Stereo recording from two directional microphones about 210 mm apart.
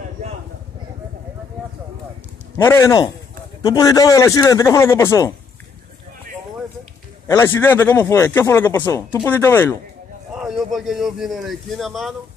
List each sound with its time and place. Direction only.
2.5 s speech: 15° left (ahead or behind)
7.2 s speech: 15° left (ahead or behind)
10.3 s a man's voice: centre (ahead or behind)